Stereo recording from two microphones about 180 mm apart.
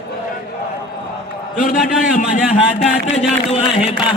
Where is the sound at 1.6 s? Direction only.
50° left (ahead or behind).